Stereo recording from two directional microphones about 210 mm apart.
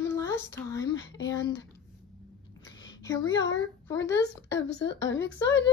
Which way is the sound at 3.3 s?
65° left (ahead or behind).